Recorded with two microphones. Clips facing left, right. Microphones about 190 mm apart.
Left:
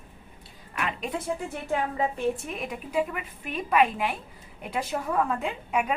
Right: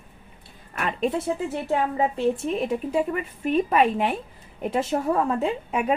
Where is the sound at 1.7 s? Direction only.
30° right (ahead or behind).